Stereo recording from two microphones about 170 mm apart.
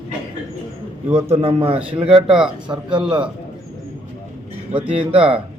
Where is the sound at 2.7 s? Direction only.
25° right (ahead or behind).